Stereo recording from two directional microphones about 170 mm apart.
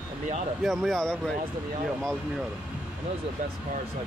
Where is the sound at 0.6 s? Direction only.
Centre (ahead or behind).